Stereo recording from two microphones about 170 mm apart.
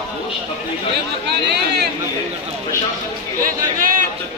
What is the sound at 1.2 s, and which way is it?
Chatter, 80° right.